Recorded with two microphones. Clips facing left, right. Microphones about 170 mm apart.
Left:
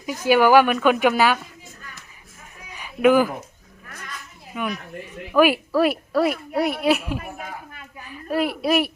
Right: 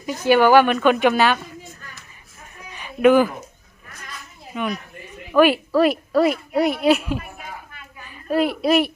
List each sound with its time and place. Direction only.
0.0 s a woman's voice: 10° left (ahead or behind)
2.7 s fowl: 10° left (ahead or behind)
5.3 s a woman's voice: 5° left (ahead or behind)
7.2 s a sound: 45° left (ahead or behind)
8.0 s a child's voice: centre (ahead or behind)